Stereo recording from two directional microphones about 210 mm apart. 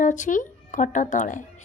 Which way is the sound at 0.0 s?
35° left (ahead or behind).